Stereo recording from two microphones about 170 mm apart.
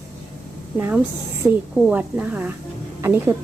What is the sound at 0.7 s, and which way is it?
A woman's voice, 10° right (ahead or behind).